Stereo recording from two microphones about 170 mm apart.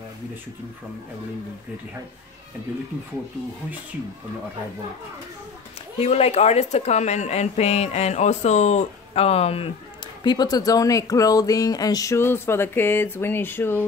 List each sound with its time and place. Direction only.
5.9 s speech: 40° left (ahead or behind)
10.2 s speech: 25° left (ahead or behind)